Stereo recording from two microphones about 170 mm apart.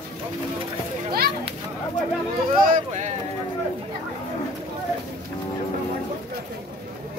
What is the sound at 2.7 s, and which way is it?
Speech, 45° right (ahead or behind).